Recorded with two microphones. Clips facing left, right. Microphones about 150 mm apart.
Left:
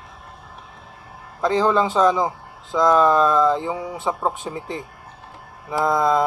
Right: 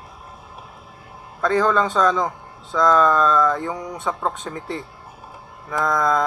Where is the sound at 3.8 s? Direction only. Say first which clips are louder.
Left 1 dB; 5° left (ahead or behind).